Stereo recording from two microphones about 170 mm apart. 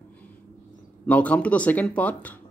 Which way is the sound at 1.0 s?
10° left (ahead or behind).